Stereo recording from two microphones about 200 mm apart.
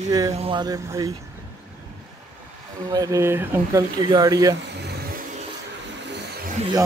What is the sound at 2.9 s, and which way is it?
Speech, 15° right (ahead or behind).